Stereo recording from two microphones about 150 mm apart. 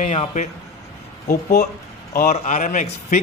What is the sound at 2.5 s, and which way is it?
Speech, 65° left (ahead or behind).